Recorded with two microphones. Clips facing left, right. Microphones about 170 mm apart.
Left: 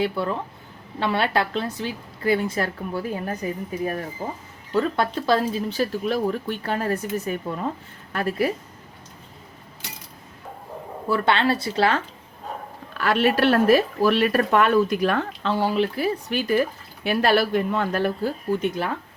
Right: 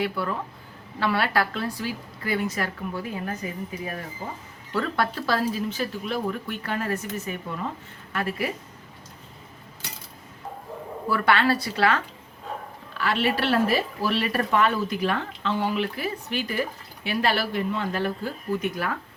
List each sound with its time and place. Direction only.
0.0 s a woman's voice: 25° left (ahead or behind)
4.7 s speech: 20° left (ahead or behind)
11.1 s a woman's voice: 25° left (ahead or behind)
13.0 s speech: 50° left (ahead or behind)
15.5 s speech: 35° left (ahead or behind)
18.5 s a woman's voice: 25° left (ahead or behind)